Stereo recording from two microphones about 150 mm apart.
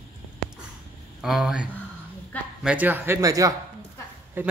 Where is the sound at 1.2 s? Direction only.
5° right (ahead or behind).